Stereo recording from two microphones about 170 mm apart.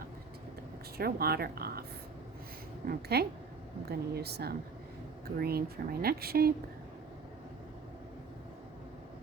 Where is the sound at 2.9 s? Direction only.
70° right (ahead or behind).